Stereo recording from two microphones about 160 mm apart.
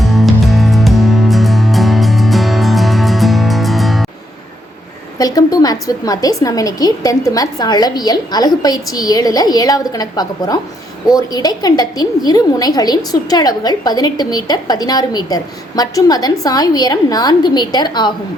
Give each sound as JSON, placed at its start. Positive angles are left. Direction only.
{"t": 0.0, "sound": "music", "side_deg": 0}
{"t": 5.1, "sound": "a woman's voice", "side_deg": 20}